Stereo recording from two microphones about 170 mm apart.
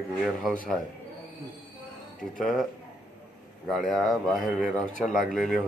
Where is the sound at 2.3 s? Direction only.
Centre (ahead or behind).